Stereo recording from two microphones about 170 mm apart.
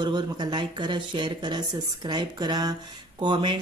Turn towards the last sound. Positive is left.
turn(degrees=-25)  # may be behind; listen again after turning